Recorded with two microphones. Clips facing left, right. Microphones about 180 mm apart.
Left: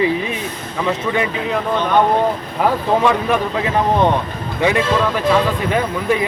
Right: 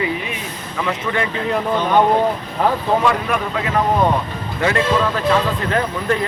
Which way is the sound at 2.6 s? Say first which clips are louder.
Left 2 dB; 10° left (ahead or behind).